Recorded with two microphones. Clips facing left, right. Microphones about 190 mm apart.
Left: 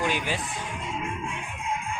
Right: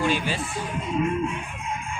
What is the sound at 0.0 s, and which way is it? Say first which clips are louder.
Speech: right 3 dB; 15° left (ahead or behind).